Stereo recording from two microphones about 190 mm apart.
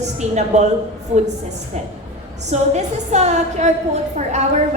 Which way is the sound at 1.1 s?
35° right (ahead or behind).